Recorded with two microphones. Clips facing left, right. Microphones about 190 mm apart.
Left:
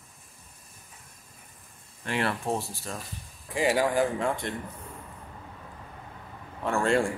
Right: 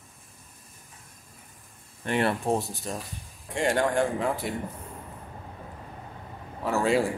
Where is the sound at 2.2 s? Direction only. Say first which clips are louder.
Right 3 dB; 20° right (ahead or behind).